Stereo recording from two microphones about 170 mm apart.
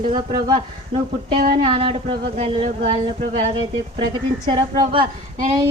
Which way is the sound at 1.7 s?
30° right (ahead or behind).